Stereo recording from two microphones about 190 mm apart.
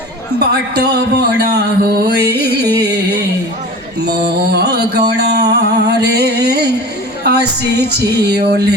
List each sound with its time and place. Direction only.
0.3 s speech: 60° right (ahead or behind)
2.7 s a sound: 60° right (ahead or behind)
4.0 s music: 60° right (ahead or behind)
7.3 s speech: 60° right (ahead or behind)